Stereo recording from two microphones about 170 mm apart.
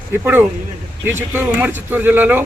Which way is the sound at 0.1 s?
10° right (ahead or behind).